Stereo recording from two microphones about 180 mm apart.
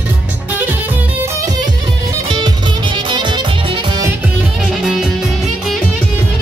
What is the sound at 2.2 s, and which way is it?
Music, 25° right (ahead or behind).